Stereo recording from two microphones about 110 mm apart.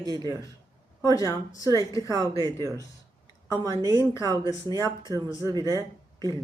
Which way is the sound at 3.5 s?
35° right (ahead or behind).